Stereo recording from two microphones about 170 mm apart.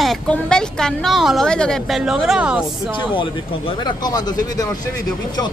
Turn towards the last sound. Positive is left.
turn(degrees=25)  # may be behind; listen again after turning